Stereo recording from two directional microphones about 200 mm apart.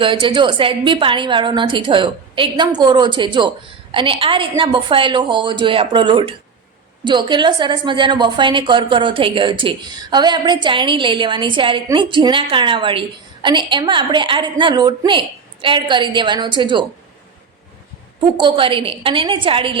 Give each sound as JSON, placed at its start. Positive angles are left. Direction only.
{"t": 0.0, "sound": "a woman's voice", "side_deg": -25}
{"t": 18.3, "sound": "a woman's voice", "side_deg": -25}